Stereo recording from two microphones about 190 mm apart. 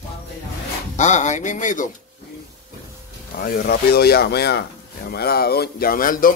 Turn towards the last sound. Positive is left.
turn(degrees=45)  # may be behind; listen again after turning